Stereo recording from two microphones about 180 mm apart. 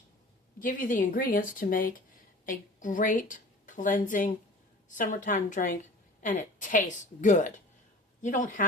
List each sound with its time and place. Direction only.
0.6 s a woman's voice: 45° left (ahead or behind)